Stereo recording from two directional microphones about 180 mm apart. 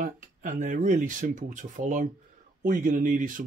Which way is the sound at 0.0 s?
45° right (ahead or behind).